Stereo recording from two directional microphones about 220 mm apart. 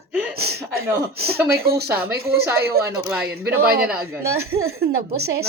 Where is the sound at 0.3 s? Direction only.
45° right (ahead or behind).